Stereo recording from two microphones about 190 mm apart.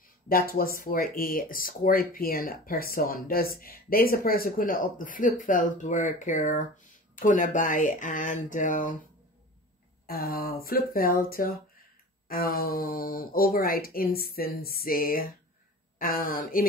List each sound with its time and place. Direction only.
0.3 s speech: 50° left (ahead or behind)
10.0 s speech: 50° left (ahead or behind)